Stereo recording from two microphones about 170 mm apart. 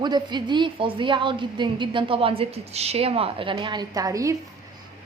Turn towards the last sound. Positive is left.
turn(degrees=-20)  # may be behind; listen again after turning